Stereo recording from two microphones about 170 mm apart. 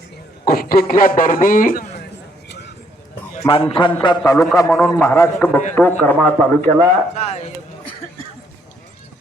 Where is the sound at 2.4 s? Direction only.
90° left.